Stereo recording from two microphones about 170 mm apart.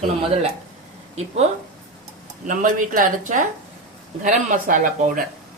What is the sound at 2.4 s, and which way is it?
Speech, 50° right (ahead or behind).